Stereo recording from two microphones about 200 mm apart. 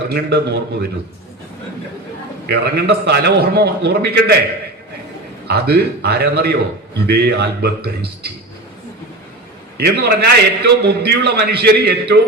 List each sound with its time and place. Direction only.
0.1 s a man's voice: 55° right (ahead or behind)
2.5 s a man's voice: 55° right (ahead or behind)
5.5 s a man's voice: 55° right (ahead or behind)
9.7 s a man's voice: 55° right (ahead or behind)